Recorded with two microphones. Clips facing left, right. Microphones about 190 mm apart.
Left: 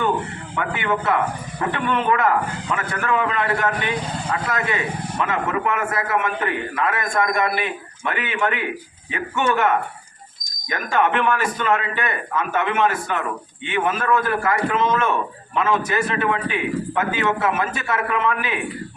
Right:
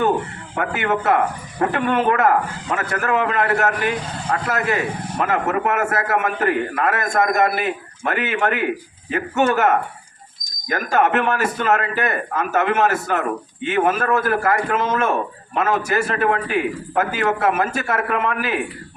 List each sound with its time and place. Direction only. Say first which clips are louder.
0.5 s a man's voice: right 2 dB; 45° right (ahead or behind)